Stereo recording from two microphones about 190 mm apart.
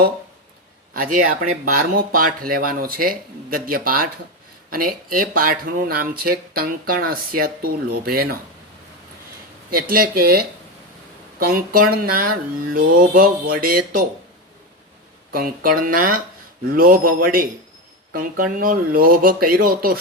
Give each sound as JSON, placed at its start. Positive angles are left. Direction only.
{"t": 0.9, "sound": "speech", "side_deg": -45}
{"t": 9.8, "sound": "speech", "side_deg": -50}
{"t": 15.3, "sound": "speech", "side_deg": -50}